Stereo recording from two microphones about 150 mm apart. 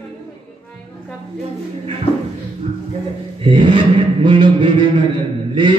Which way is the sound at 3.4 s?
35° right (ahead or behind).